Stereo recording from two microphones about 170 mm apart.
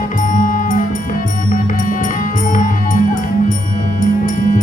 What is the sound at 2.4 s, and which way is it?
Music, 50° left (ahead or behind).